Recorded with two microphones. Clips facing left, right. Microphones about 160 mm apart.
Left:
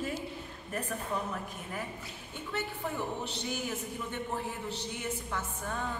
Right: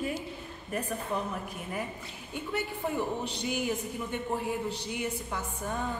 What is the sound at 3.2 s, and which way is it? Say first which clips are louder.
A man's voice: right 5 dB; 15° right (ahead or behind).